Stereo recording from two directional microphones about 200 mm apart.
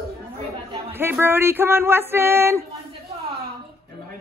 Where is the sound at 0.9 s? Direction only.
10° right (ahead or behind).